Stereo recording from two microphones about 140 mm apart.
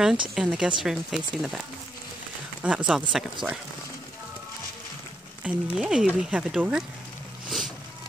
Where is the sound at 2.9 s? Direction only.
5° right (ahead or behind).